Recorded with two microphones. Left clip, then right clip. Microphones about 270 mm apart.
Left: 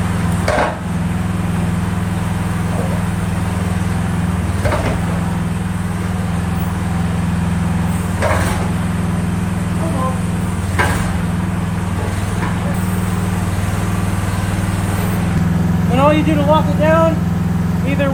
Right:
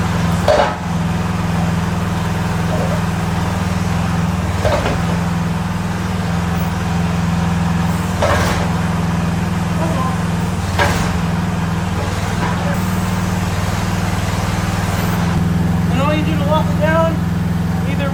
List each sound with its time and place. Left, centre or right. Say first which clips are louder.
16.0 s vehicle: left 6 dB; centre